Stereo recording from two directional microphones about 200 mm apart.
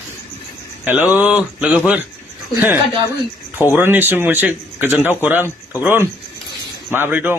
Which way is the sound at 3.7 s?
10° right (ahead or behind).